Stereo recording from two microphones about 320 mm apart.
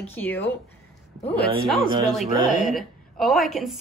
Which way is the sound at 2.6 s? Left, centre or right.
Centre.